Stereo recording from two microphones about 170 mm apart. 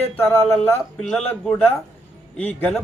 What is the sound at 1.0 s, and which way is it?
Speech, 5° left (ahead or behind).